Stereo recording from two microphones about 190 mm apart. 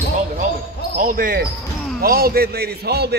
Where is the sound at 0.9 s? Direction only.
45° right (ahead or behind).